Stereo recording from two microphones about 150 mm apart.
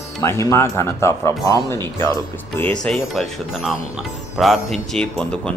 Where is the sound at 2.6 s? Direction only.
5° left (ahead or behind).